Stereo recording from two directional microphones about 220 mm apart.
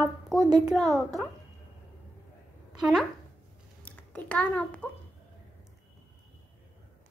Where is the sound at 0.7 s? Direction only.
Centre (ahead or behind).